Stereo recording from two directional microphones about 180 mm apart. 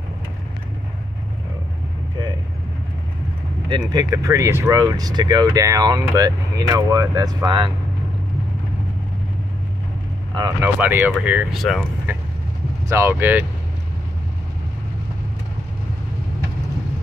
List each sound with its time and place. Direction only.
3.6 s speech: 20° right (ahead or behind)
10.3 s speech: 20° right (ahead or behind)
10.8 s speech: 10° right (ahead or behind)
12.8 s speech: 15° right (ahead or behind)